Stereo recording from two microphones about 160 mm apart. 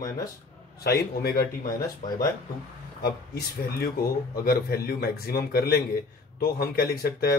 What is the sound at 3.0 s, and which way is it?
A man's voice, 80° left.